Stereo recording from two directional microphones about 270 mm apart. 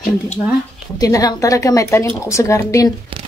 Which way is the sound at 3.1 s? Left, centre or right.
Centre.